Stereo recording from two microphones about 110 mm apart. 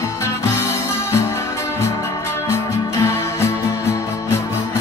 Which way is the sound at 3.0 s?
25° left (ahead or behind).